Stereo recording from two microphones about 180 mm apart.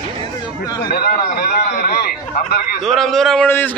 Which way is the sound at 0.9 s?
55° left (ahead or behind).